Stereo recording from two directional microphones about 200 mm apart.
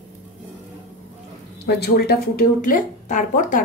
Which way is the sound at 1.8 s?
55° left (ahead or behind).